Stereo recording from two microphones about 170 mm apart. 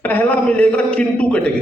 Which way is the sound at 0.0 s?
10° left (ahead or behind).